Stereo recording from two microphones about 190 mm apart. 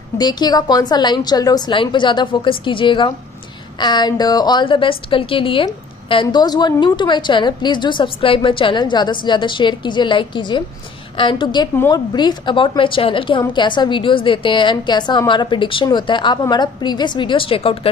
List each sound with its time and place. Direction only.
0.2 s a woman's voice: 20° left (ahead or behind)